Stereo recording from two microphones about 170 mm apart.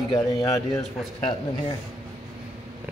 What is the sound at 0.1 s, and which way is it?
Speech, 20° left (ahead or behind).